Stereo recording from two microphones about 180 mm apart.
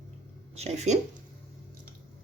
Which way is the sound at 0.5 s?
40° right (ahead or behind).